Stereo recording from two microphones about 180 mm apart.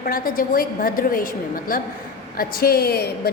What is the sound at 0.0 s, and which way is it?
A woman's voice, 55° left (ahead or behind).